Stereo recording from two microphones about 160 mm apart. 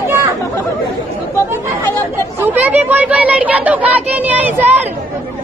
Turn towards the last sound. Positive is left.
turn(degrees=-10)  # may be behind; listen again after turning